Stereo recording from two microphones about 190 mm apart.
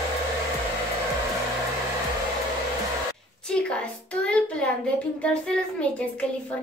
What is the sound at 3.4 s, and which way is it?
A woman's voice, 5° left (ahead or behind).